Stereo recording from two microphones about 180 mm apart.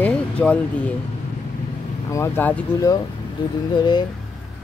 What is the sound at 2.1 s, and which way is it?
Speech, 10° left (ahead or behind).